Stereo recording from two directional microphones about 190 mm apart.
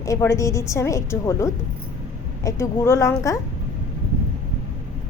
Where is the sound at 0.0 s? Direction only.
15° left (ahead or behind).